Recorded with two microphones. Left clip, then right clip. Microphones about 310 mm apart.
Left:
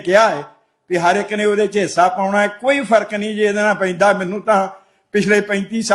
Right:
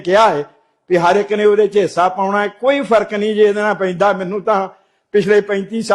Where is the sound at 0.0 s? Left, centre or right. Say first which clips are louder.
Right 1 dB; right.